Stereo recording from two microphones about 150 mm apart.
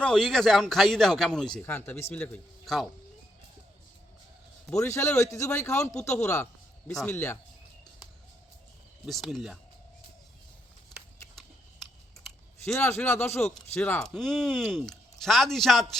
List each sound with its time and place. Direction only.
0.0 s speech: 5° left (ahead or behind)
1.6 s speech: 15° left (ahead or behind)
4.8 s a man's voice: 20° left (ahead or behind)
9.0 s speech: centre (ahead or behind)
11.3 s scissors: 5° left (ahead or behind)
12.8 s a man's voice: 15° left (ahead or behind)